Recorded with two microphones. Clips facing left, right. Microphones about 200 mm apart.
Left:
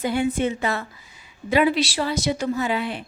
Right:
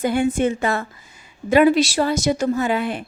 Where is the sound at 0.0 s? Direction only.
50° right (ahead or behind).